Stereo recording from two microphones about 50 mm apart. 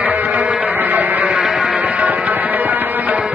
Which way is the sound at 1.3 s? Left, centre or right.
Centre.